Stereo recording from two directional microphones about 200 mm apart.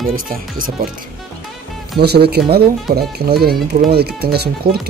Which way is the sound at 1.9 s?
55° right (ahead or behind).